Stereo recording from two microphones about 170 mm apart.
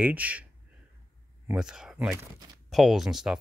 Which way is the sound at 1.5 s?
5° right (ahead or behind).